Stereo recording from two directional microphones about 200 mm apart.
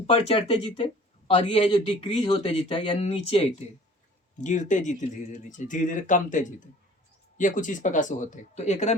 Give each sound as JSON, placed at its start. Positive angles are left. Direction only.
{"t": 0.1, "sound": "speech", "side_deg": 30}